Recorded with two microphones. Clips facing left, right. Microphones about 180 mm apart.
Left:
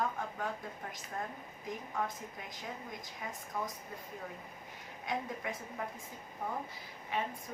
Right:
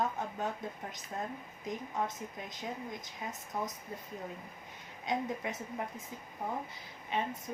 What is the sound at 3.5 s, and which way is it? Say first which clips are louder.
Speech: right 2 dB; 20° right (ahead or behind).